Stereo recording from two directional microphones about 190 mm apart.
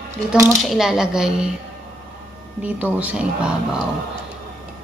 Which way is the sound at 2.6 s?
10° right (ahead or behind).